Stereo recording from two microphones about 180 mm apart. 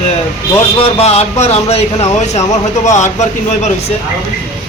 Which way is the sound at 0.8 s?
35° left (ahead or behind).